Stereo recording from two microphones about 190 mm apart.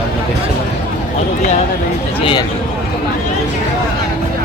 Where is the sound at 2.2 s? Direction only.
25° left (ahead or behind).